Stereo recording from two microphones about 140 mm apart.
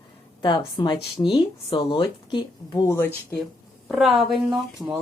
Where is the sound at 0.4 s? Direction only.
30° left (ahead or behind).